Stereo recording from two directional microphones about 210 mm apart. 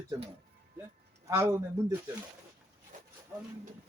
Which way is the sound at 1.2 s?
15° right (ahead or behind).